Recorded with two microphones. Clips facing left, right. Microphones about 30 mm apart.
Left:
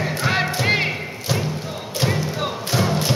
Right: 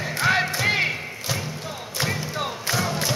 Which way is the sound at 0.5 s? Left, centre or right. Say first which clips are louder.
Left 2 dB; centre.